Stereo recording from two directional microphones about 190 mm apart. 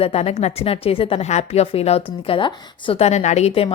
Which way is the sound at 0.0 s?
30° left (ahead or behind).